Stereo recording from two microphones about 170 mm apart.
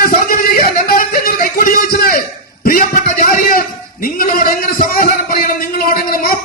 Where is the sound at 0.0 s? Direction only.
60° left (ahead or behind).